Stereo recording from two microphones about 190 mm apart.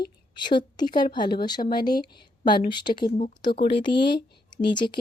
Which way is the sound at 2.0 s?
25° left (ahead or behind).